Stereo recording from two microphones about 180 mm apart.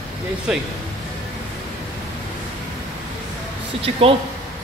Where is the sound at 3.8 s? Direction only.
30° right (ahead or behind).